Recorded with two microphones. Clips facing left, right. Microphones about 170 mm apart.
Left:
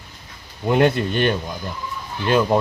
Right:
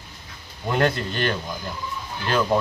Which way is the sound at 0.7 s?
20° left (ahead or behind).